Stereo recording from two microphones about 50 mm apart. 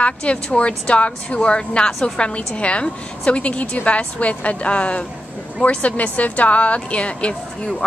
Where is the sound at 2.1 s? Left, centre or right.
Left.